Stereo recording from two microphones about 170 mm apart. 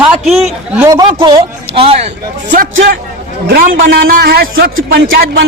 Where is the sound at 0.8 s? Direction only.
20° right (ahead or behind).